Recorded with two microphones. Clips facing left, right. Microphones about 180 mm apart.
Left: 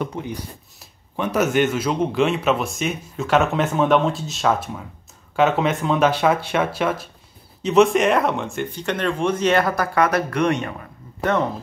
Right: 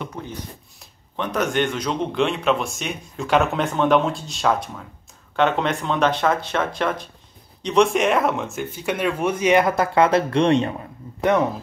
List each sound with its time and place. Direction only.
0.2 s speech: 20° left (ahead or behind)
0.7 s a man's voice: 5° left (ahead or behind); by 10.9 s 25° right (ahead or behind)